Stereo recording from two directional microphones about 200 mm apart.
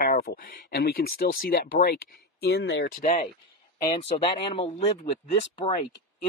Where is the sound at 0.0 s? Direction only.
45° left (ahead or behind).